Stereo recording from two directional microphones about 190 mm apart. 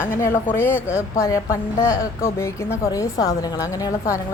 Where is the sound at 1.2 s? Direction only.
15° left (ahead or behind).